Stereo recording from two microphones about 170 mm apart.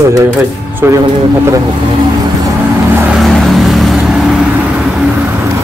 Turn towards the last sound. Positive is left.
turn(degrees=0)  # may be behind; listen again after turning